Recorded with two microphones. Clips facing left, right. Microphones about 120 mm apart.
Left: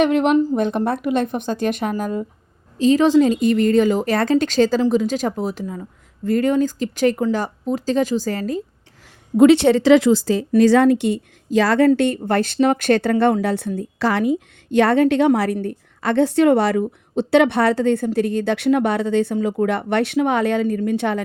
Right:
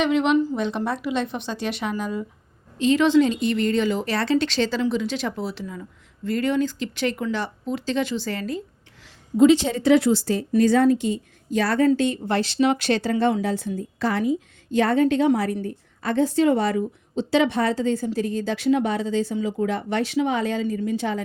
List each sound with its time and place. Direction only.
0.0 s a woman's voice: 50° left (ahead or behind)
2.7 s a woman's voice: 35° left (ahead or behind)
9.4 s speech: 65° left (ahead or behind); by 11.9 s 90° left
11.9 s a woman's voice: 55° left (ahead or behind)